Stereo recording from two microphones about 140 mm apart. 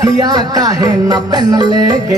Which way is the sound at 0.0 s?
30° right (ahead or behind).